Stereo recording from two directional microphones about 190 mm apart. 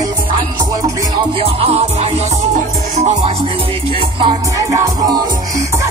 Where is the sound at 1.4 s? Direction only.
30° right (ahead or behind).